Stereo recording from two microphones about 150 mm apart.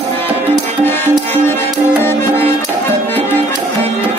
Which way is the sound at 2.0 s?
15° left (ahead or behind).